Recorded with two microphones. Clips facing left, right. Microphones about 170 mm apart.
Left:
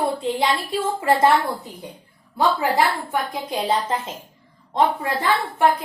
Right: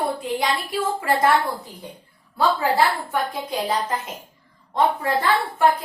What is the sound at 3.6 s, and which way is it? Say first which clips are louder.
Speech: left 2 dB; 25° left (ahead or behind).